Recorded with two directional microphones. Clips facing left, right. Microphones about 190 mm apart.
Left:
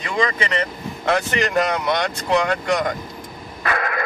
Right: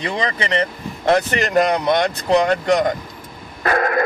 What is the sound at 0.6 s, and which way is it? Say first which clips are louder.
Speech: right 3 dB; 35° right (ahead or behind).